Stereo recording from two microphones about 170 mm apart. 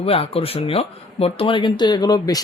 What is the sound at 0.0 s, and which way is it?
Speech, 35° left (ahead or behind).